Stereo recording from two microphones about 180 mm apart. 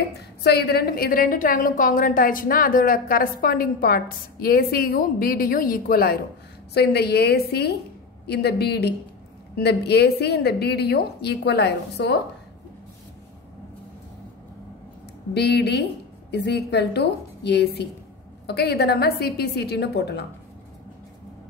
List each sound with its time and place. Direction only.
0.4 s a woman's voice: 65° left (ahead or behind)
15.3 s a woman's voice: 65° left (ahead or behind)